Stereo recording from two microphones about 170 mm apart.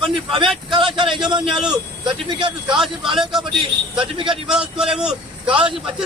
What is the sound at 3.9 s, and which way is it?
Speech, 30° right (ahead or behind).